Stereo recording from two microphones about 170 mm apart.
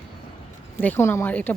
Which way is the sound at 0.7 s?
10° left (ahead or behind).